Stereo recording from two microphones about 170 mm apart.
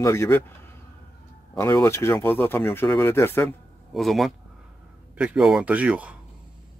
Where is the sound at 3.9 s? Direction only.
Centre (ahead or behind).